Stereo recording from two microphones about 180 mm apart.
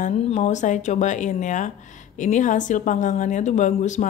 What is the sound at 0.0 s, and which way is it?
Speech, 40° left (ahead or behind).